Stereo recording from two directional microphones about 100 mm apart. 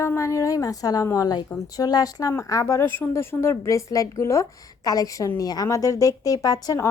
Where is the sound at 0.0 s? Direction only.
30° left (ahead or behind).